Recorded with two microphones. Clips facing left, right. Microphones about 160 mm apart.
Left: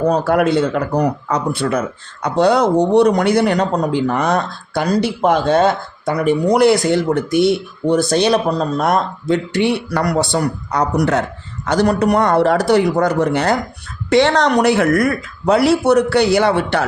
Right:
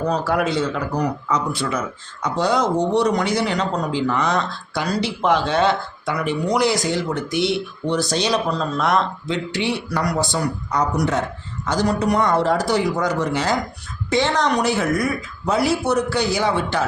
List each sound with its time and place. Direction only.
0.1 s speech: 55° left (ahead or behind)
14.1 s speech: 70° left (ahead or behind)